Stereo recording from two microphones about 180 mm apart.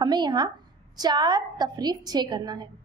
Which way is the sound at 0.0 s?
25° right (ahead or behind).